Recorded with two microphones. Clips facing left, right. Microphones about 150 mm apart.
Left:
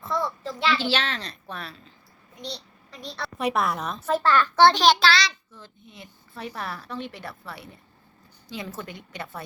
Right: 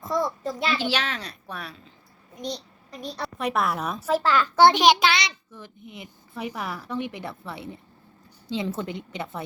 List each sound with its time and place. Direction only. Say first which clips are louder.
0.0 s a sound: right 2 dB; 40° right (ahead or behind)
0.9 s a child's voice: left 1 dB; 10° right (ahead or behind)
2.4 s a child's voice: right 5 dB; 45° right (ahead or behind)
3.3 s a child's voice: left 1 dB; centre (ahead or behind); by 9.4 s 20° right (ahead or behind)